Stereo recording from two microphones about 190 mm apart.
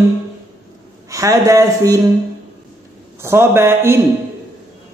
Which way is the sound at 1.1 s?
15° right (ahead or behind).